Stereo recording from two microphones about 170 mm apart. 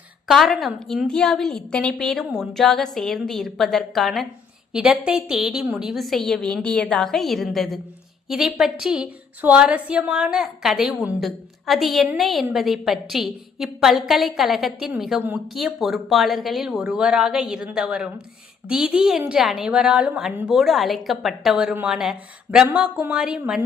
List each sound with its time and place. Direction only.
0.3 s a woman's voice: centre (ahead or behind)